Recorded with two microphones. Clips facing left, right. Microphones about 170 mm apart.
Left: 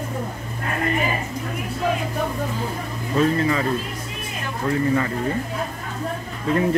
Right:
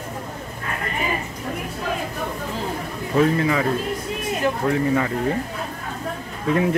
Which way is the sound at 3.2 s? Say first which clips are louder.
Right 1 dB; 10° right (ahead or behind).